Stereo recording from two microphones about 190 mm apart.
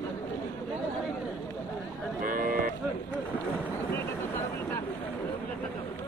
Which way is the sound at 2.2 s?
45° right (ahead or behind).